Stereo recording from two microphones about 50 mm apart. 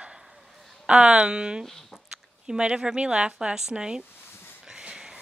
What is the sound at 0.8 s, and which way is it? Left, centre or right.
Speech, centre.